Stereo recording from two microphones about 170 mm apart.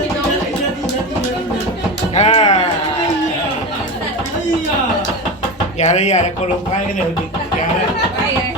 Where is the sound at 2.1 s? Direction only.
40° left (ahead or behind).